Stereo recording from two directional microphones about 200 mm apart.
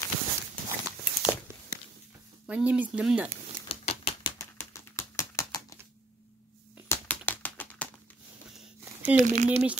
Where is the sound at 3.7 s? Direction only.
30° left (ahead or behind).